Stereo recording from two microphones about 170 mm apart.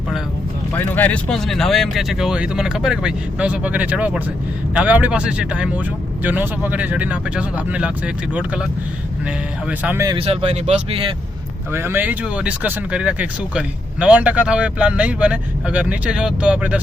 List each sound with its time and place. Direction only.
0.7 s speech: 15° left (ahead or behind); by 8.6 s 5° right (ahead or behind)
9.6 s speech: 10° right (ahead or behind)
10.2 s speech: 35° right (ahead or behind)
11.7 s speech: 15° right (ahead or behind)